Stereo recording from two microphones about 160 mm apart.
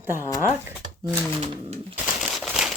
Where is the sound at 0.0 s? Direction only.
15° right (ahead or behind).